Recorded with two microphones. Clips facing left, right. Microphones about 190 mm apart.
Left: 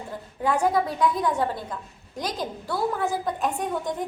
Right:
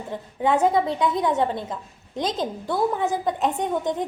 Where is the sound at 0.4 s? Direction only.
20° right (ahead or behind).